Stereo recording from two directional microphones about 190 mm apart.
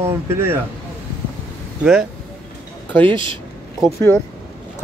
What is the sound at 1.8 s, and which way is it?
Speech, 5° right (ahead or behind).